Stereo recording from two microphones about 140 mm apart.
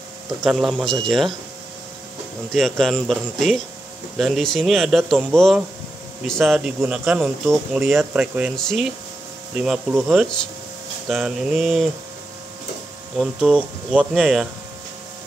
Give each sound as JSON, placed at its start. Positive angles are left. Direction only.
{"t": 0.4, "sound": "a man's voice", "side_deg": 0}
{"t": 2.5, "sound": "a man's voice", "side_deg": 5}
{"t": 8.1, "sound": "speech", "side_deg": -10}
{"t": 8.5, "sound": "a man's voice", "side_deg": 5}
{"t": 9.6, "sound": "a man's voice", "side_deg": -10}
{"t": 13.1, "sound": "a man's voice", "side_deg": -5}